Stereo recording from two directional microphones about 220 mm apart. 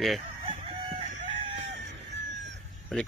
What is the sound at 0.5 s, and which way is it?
Chicken, 30° right (ahead or behind).